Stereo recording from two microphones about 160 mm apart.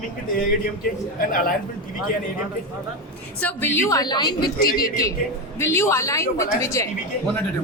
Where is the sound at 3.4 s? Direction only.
10° left (ahead or behind).